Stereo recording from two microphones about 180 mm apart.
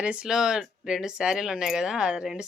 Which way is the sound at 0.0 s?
5° right (ahead or behind).